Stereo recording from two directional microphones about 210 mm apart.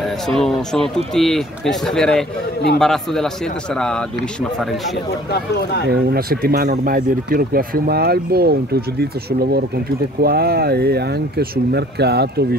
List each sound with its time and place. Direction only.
0.0 s speech: centre (ahead or behind)
5.9 s speech: 45° right (ahead or behind)